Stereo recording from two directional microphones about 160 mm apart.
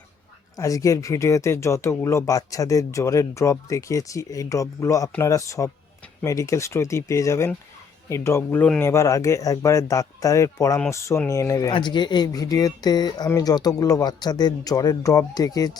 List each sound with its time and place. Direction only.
0.5 s speech: 20° left (ahead or behind)
8.9 s speech: 20° left (ahead or behind)